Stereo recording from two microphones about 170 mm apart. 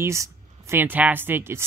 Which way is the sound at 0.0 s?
15° right (ahead or behind).